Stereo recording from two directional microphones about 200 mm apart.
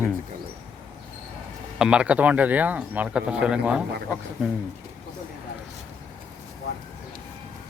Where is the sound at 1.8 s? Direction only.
5° right (ahead or behind).